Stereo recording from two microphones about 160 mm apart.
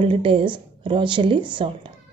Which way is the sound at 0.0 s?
35° right (ahead or behind).